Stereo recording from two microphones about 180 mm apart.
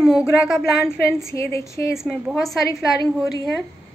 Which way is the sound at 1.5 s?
15° left (ahead or behind).